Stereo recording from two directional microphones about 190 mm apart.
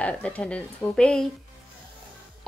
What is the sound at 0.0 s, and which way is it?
A woman's voice, 5° left (ahead or behind).